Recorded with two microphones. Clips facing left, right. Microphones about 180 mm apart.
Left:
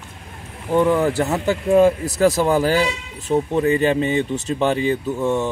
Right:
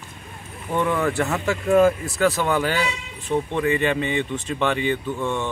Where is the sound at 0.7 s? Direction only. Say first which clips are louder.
Left 5 dB; 30° left (ahead or behind).